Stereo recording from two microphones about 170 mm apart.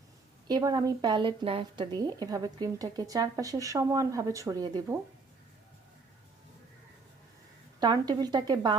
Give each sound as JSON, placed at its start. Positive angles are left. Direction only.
{"t": 0.4, "sound": "a woman's voice", "side_deg": -25}
{"t": 7.8, "sound": "a woman's voice", "side_deg": -25}